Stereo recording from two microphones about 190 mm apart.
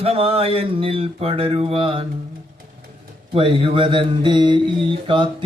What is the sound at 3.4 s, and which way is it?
Speech, 25° right (ahead or behind).